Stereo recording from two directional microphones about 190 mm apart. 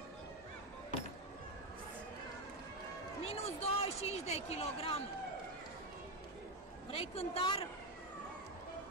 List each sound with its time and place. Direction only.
3.3 s speech: 30° left (ahead or behind)
6.9 s speech: 30° left (ahead or behind)